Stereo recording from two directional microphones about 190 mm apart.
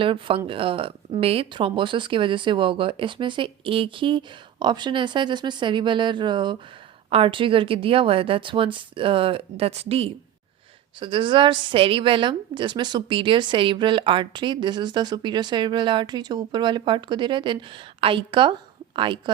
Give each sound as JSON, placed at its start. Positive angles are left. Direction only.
{"t": 0.0, "sound": "a woman's voice", "side_deg": -25}